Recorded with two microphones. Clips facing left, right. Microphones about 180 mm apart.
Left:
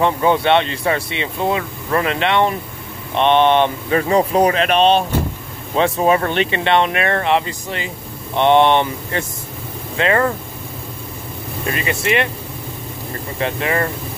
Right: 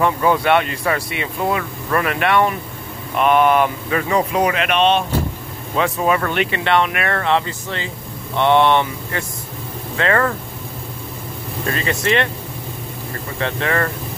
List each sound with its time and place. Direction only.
0.0 s speech: 25° left (ahead or behind)
11.6 s speech: 15° left (ahead or behind)
13.4 s speech: 15° left (ahead or behind)